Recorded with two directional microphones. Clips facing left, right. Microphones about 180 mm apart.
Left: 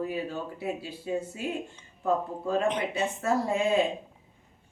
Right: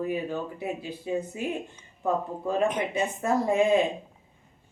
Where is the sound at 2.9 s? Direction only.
15° right (ahead or behind).